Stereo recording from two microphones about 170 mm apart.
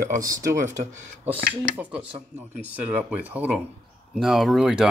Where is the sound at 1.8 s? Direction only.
5° right (ahead or behind).